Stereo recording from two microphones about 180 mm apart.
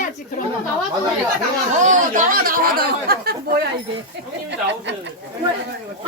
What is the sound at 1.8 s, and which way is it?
Speech, 45° right (ahead or behind).